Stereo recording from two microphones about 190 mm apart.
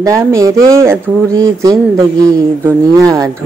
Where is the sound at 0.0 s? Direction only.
15° right (ahead or behind).